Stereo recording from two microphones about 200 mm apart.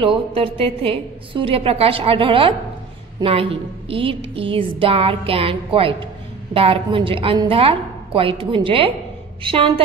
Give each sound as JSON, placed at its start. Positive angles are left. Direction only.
{"t": 0.0, "sound": "a woman's voice", "side_deg": -25}